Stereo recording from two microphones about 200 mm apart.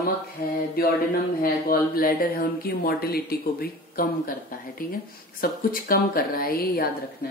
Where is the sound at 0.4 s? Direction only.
45° left (ahead or behind).